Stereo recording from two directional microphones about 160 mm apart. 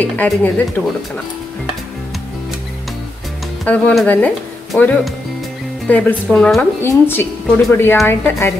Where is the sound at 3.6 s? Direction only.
5° left (ahead or behind).